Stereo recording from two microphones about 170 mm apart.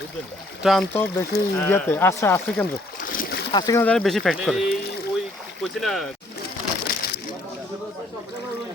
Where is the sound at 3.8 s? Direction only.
5° left (ahead or behind).